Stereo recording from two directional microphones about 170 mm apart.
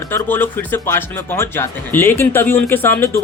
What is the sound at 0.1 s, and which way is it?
Speech, 10° left (ahead or behind).